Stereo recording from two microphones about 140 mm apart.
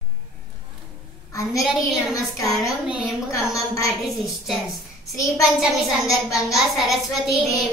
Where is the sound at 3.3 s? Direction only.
20° left (ahead or behind).